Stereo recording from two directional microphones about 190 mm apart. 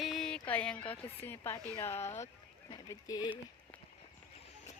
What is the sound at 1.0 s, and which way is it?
Speech, 30° left (ahead or behind).